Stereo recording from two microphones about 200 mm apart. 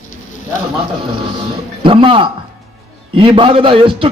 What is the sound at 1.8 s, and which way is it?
A man's voice, 25° right (ahead or behind).